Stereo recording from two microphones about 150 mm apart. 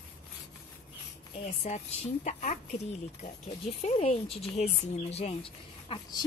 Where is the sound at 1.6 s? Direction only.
55° left (ahead or behind).